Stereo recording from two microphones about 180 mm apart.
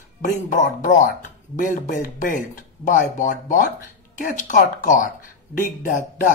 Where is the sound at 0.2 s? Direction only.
45° left (ahead or behind).